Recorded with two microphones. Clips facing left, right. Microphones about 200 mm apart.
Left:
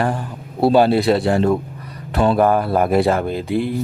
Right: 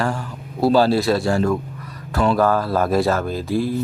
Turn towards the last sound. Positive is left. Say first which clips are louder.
# left 1 dB
turn(degrees=60)  # may be behind; listen again after turning